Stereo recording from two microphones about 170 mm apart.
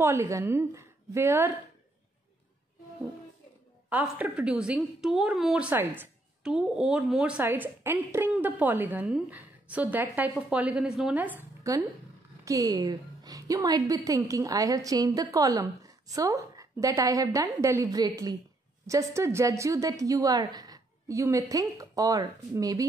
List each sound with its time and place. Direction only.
0.0 s a woman's voice: 15° right (ahead or behind)
3.9 s a woman's voice: 10° right (ahead or behind)